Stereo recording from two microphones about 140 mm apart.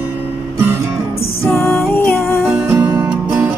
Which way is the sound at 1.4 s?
20° left (ahead or behind).